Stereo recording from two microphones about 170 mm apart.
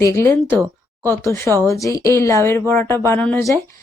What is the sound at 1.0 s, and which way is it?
Speech, 15° left (ahead or behind).